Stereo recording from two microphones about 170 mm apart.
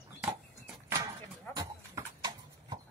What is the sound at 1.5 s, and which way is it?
Dog, 25° right (ahead or behind).